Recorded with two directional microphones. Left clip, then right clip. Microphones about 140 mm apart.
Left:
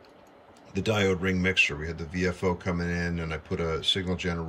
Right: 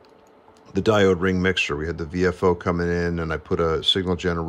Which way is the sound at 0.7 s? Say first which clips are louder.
Right 8 dB; 15° right (ahead or behind).